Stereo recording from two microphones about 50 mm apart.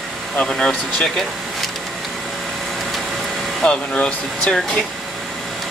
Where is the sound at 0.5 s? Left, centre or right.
Centre.